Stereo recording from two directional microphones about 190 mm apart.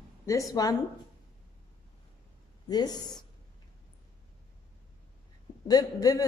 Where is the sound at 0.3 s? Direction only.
20° left (ahead or behind).